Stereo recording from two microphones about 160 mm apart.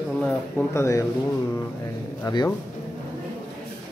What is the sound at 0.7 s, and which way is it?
Speech, 20° left (ahead or behind).